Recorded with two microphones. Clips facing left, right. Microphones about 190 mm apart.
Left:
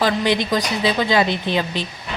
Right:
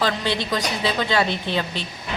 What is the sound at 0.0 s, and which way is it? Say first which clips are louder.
A woman's voice: left 5 dB; 15° left (ahead or behind).